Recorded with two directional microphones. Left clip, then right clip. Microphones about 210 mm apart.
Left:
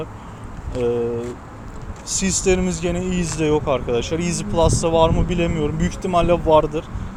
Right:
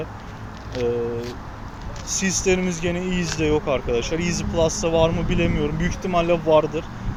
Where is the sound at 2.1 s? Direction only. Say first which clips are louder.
Left 1 dB; 50° left (ahead or behind).